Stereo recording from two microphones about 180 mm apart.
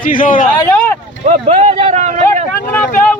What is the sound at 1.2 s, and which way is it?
A man's voice, 35° right (ahead or behind).